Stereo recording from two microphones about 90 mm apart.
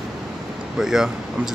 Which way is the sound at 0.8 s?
5° right (ahead or behind).